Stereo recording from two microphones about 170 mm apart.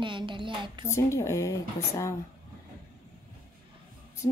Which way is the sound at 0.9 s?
15° left (ahead or behind).